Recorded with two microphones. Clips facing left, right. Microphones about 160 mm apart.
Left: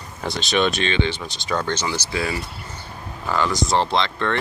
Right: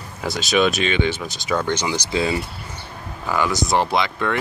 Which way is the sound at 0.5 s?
5° right (ahead or behind).